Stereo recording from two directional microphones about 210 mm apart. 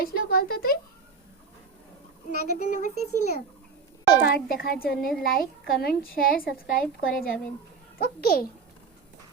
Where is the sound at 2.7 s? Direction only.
35° left (ahead or behind).